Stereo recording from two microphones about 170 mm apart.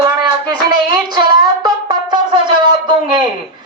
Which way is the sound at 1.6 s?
25° right (ahead or behind).